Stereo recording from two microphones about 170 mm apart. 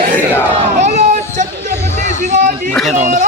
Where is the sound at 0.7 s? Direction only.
45° right (ahead or behind).